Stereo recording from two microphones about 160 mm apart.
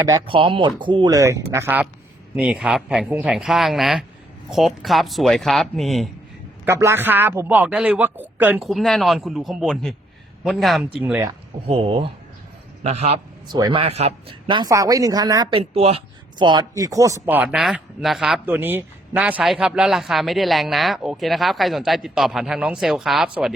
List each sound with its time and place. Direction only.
0.3 s speech: 30° right (ahead or behind); by 6.1 s centre (ahead or behind)
6.7 s speech: 15° right (ahead or behind)
8.6 s speech: centre (ahead or behind)
11.6 s speech: 35° right (ahead or behind)
13.5 s speech: 25° right (ahead or behind)
13.8 s speech: 40° right (ahead or behind); by 15.5 s 25° right (ahead or behind)
15.5 s speech: 40° right (ahead or behind); by 23.3 s centre (ahead or behind)